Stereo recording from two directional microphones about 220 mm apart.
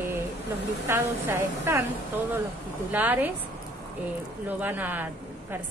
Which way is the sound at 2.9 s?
10° right (ahead or behind).